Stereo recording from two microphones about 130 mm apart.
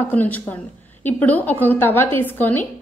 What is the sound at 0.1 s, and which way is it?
A woman's voice, 10° left (ahead or behind).